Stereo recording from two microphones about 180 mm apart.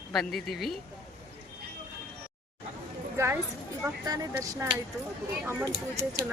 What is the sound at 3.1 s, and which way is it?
Speech, 15° right (ahead or behind).